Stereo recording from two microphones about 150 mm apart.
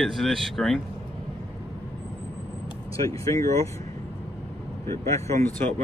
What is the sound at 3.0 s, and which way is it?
Speech, 20° left (ahead or behind).